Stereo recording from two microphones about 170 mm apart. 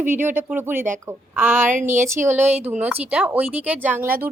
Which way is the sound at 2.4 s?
40° right (ahead or behind).